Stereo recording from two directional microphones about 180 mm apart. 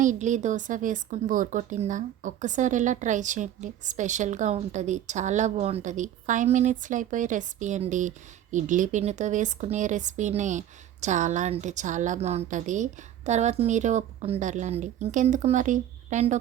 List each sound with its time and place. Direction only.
0.0 s a woman's voice: 45° right (ahead or behind)